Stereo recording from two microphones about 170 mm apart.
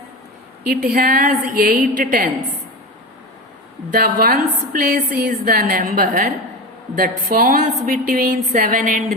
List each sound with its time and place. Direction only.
0.7 s a woman's voice: 60° right (ahead or behind)
3.9 s a woman's voice: 60° right (ahead or behind)